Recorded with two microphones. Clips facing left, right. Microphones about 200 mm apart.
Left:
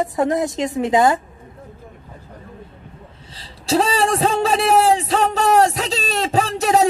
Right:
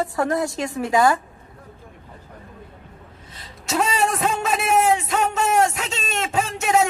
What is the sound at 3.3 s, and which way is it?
A man's voice, 30° left (ahead or behind).